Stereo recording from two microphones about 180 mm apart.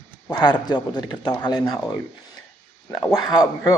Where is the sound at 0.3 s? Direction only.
25° left (ahead or behind).